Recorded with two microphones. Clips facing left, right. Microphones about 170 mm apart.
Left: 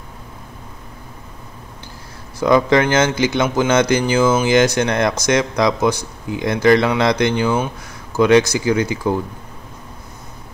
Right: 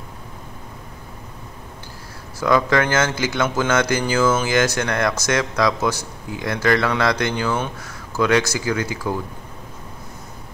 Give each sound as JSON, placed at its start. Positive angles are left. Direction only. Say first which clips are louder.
{"t": 2.4, "sound": "speech", "louder": "left 4 dB", "side_deg": 20}